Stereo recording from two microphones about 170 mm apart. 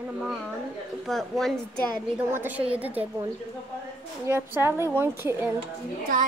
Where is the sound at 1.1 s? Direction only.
Centre (ahead or behind).